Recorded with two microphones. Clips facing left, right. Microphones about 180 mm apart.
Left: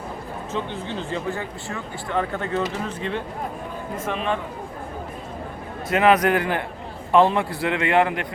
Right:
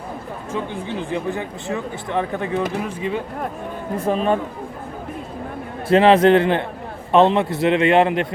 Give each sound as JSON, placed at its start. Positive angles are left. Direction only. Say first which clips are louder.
{"t": 0.5, "sound": "speech", "louder": "right 3 dB", "side_deg": -15}
{"t": 3.9, "sound": "a man's voice", "louder": "right 7 dB", "side_deg": -35}
{"t": 5.9, "sound": "a man's voice", "louder": "right 6 dB", "side_deg": -30}